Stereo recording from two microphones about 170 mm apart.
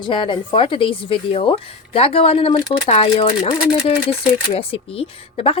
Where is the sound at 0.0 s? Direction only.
30° left (ahead or behind).